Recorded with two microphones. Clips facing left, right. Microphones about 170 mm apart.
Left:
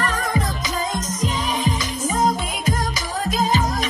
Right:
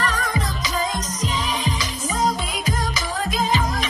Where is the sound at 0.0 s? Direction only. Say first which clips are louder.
Left 2 dB; 45° left (ahead or behind).